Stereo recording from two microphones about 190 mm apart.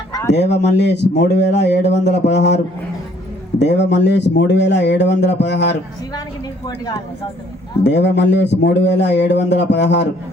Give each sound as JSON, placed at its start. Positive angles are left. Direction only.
{"t": 0.3, "sound": "speech", "side_deg": 65}
{"t": 3.6, "sound": "speech", "side_deg": 65}
{"t": 7.9, "sound": "speech", "side_deg": 65}